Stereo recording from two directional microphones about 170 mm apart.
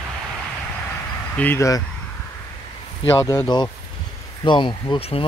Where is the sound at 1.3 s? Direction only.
10° left (ahead or behind).